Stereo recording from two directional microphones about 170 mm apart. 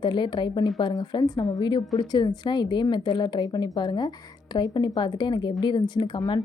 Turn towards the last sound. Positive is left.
turn(degrees=30)  # may be behind; listen again after turning